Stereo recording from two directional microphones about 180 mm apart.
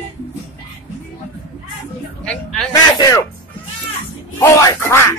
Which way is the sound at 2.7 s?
20° left (ahead or behind).